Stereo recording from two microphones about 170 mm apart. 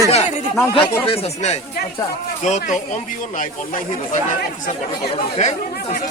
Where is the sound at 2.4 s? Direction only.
45° left (ahead or behind).